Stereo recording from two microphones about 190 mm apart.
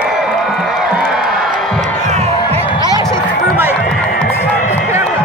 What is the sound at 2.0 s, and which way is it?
Music, 35° right (ahead or behind).